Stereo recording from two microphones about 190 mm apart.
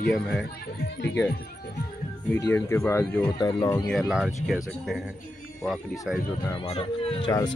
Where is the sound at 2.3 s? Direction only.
10° left (ahead or behind).